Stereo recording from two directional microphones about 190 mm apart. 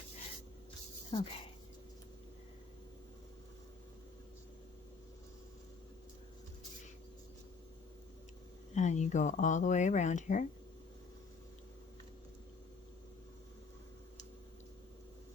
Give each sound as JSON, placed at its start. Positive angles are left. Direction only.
{"t": 1.1, "sound": "speech", "side_deg": 30}
{"t": 8.7, "sound": "speech", "side_deg": 40}